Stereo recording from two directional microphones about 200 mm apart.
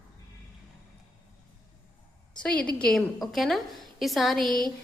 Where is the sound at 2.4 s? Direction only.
5° left (ahead or behind).